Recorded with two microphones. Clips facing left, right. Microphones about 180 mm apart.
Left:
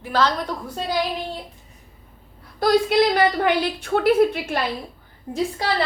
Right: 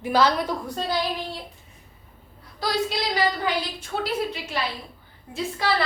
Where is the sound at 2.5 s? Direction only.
55° left (ahead or behind).